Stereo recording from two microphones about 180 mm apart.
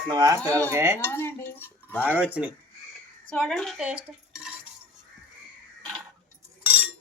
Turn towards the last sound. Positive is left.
turn(degrees=-10)  # may be behind; listen again after turning